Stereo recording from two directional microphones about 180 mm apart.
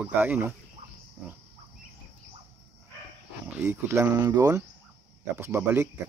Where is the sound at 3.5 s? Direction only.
15° right (ahead or behind).